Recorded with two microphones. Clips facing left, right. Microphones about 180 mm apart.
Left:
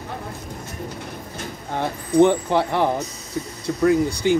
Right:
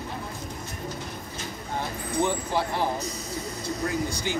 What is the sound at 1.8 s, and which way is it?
Speech, 65° left (ahead or behind).